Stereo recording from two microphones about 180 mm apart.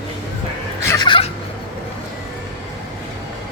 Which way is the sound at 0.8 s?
25° left (ahead or behind).